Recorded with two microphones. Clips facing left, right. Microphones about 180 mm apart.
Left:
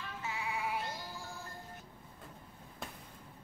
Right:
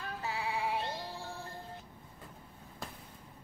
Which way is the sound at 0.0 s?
35° right (ahead or behind).